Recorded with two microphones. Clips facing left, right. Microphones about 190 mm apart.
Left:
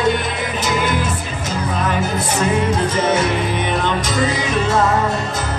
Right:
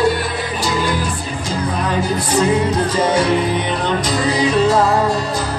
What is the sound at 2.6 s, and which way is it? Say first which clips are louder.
Music: right 1 dB; 25° left (ahead or behind).